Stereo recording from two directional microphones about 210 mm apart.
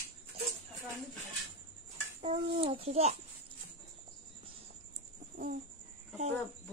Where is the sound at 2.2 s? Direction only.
30° right (ahead or behind).